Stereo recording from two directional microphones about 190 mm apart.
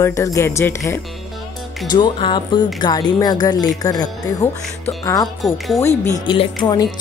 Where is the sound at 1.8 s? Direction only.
25° left (ahead or behind).